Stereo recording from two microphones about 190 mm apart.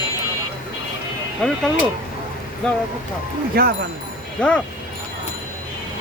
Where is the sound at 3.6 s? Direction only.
55° right (ahead or behind).